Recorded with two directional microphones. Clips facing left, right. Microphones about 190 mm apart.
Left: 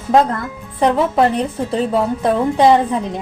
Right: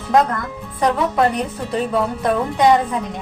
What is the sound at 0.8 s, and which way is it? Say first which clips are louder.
A woman's voice: left 3 dB; 30° left (ahead or behind).